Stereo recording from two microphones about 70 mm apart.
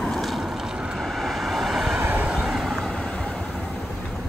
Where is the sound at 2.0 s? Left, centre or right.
Right.